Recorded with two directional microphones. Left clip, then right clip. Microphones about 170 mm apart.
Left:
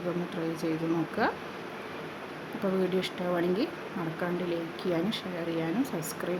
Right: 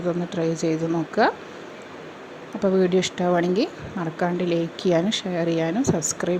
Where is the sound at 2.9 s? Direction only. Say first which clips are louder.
Right 9 dB; 35° right (ahead or behind).